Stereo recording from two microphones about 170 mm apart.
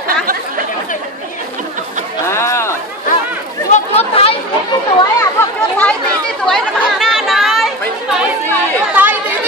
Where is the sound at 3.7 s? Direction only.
35° left (ahead or behind).